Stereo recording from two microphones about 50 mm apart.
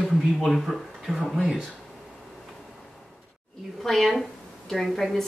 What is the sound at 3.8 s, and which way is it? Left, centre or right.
Speech, centre.